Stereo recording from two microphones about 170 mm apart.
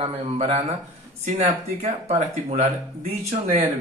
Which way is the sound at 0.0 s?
35° right (ahead or behind).